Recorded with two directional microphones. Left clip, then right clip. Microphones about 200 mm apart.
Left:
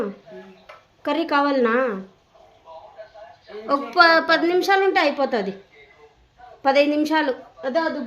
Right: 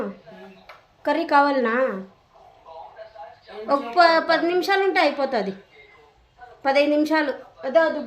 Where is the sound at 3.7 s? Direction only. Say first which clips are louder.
Left 1 dB; 20° left (ahead or behind).